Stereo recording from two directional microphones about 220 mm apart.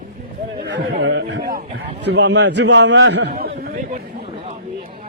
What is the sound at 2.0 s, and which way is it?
A man's voice, 50° right (ahead or behind).